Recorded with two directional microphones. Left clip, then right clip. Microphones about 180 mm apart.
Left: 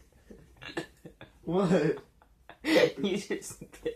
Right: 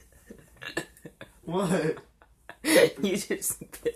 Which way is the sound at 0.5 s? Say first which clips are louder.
Right 4 dB; 40° right (ahead or behind).